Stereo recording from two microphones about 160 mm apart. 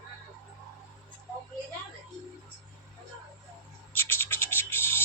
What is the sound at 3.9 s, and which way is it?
Scratch, 15° left (ahead or behind).